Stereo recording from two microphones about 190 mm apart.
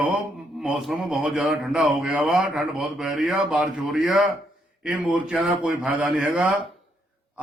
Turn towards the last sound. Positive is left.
turn(degrees=-5)  # may be behind; listen again after turning